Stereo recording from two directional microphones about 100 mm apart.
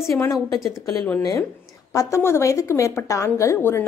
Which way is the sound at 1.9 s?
30° left (ahead or behind).